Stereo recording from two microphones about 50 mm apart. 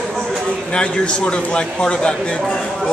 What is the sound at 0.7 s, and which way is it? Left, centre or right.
A man's voice, left.